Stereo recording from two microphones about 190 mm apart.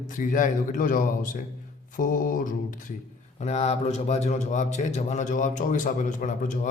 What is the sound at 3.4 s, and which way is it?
A man's voice, 35° left (ahead or behind).